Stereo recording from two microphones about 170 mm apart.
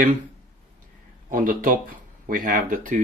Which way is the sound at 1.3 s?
55° right (ahead or behind).